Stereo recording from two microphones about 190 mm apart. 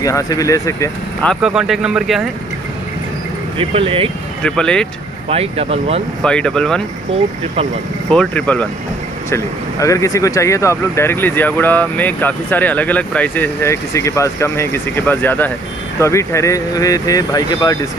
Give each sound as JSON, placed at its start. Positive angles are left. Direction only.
{"t": 0.0, "sound": "speech", "side_deg": 20}
{"t": 1.2, "sound": "speech", "side_deg": 0}
{"t": 3.5, "sound": "speech", "side_deg": -30}
{"t": 4.5, "sound": "speech", "side_deg": 5}
{"t": 5.3, "sound": "speech", "side_deg": -30}
{"t": 6.2, "sound": "speech", "side_deg": 5}
{"t": 8.1, "sound": "speech", "side_deg": 5}